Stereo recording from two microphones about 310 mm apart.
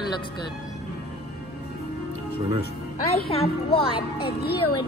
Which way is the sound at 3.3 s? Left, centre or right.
Centre.